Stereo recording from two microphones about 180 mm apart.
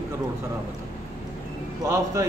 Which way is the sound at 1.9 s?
15° right (ahead or behind).